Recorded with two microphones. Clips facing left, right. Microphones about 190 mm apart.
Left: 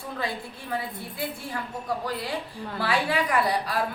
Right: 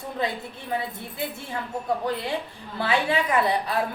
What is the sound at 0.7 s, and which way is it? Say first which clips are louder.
Speech: right 2 dB; 20° right (ahead or behind).